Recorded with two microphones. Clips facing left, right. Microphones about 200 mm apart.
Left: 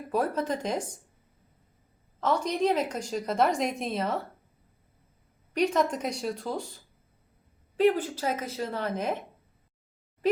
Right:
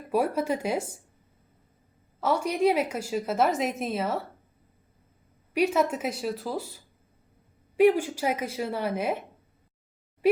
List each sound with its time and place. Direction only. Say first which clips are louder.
0.1 s a woman's voice: right 3 dB; 10° right (ahead or behind)
2.2 s a woman's voice: right 2 dB; 10° right (ahead or behind)
5.5 s a woman's voice: right 1 dB; 5° right (ahead or behind)